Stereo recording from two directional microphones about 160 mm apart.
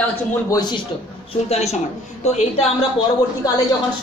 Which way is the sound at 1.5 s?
40° left (ahead or behind).